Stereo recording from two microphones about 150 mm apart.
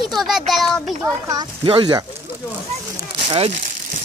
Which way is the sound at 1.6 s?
35° right (ahead or behind).